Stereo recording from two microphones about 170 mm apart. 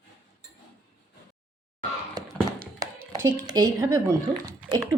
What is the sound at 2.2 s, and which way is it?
Tap, 20° right (ahead or behind).